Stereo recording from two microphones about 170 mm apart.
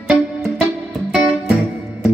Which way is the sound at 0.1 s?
Centre (ahead or behind).